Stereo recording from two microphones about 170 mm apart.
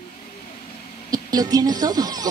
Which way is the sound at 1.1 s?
20° right (ahead or behind).